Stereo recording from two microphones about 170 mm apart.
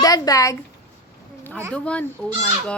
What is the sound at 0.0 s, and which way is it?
Speech, 20° left (ahead or behind).